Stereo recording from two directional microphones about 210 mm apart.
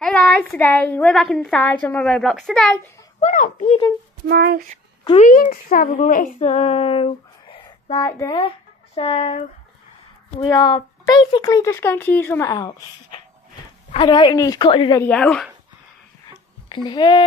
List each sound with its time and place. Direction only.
0.0 s a woman's voice: 5° left (ahead or behind)
3.2 s speech: 35° left (ahead or behind)
4.3 s speech: 45° right (ahead or behind)
5.0 s speech: 35° left (ahead or behind)
8.0 s speech: 15° left (ahead or behind)
8.4 s a woman's voice: 30° left (ahead or behind)
15.0 s a woman's voice: 5° left (ahead or behind)
16.3 s a sound: 20° left (ahead or behind)